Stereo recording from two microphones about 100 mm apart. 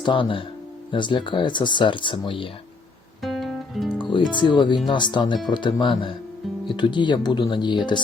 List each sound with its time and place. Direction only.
0.0 s speech: 55° left (ahead or behind)
3.2 s guitar: centre (ahead or behind)
3.9 s music: 55° left (ahead or behind)
4.4 s speech: 50° left (ahead or behind)